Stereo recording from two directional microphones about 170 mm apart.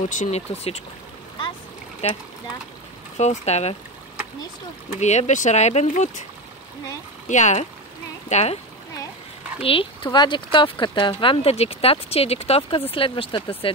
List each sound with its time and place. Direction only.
0.0 s speech: 45° left (ahead or behind)
2.0 s speech: 40° left (ahead or behind)
5.0 s speech: 40° left (ahead or behind)
7.2 s speech: 45° left (ahead or behind)
9.6 s speech: 30° left (ahead or behind)